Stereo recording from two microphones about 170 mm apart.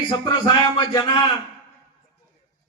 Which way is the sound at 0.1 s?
25° left (ahead or behind).